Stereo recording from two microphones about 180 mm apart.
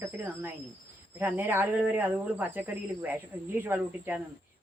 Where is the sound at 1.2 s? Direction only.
10° right (ahead or behind).